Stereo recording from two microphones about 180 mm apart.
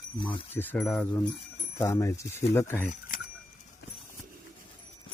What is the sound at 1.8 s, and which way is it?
Speech, 15° left (ahead or behind).